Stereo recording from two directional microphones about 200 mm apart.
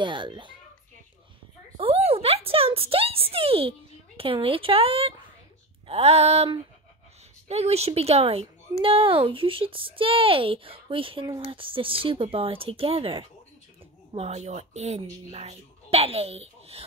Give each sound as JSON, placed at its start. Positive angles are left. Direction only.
{"t": 0.0, "sound": "speech", "side_deg": -25}
{"t": 1.8, "sound": "a woman's voice", "side_deg": -30}